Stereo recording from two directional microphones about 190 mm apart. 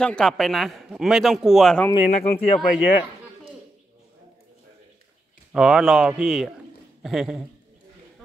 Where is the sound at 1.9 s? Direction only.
35° left (ahead or behind).